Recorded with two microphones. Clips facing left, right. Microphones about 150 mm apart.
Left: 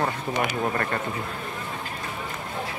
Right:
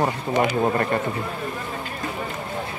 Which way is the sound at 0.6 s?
25° right (ahead or behind).